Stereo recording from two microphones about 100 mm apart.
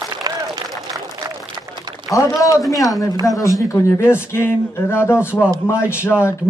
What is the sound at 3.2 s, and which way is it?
Speech, 35° left (ahead or behind).